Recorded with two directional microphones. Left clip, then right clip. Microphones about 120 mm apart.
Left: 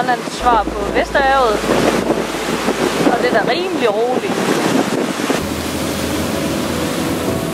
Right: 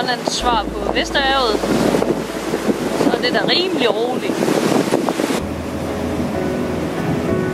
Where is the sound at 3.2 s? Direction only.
25° right (ahead or behind).